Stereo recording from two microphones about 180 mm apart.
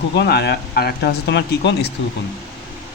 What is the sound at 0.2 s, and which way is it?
Speech, 65° left (ahead or behind).